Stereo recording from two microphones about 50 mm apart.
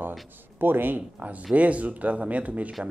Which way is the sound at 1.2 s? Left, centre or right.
Right.